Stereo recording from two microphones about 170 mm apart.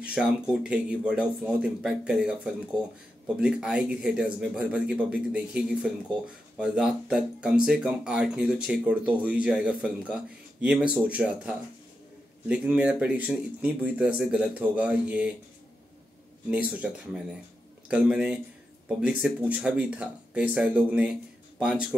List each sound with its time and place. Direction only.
0.0 s speech: 5° right (ahead or behind)
16.4 s speech: 5° right (ahead or behind)